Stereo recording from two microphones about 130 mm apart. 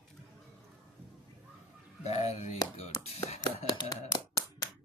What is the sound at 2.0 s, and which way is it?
Speech, 55° left (ahead or behind).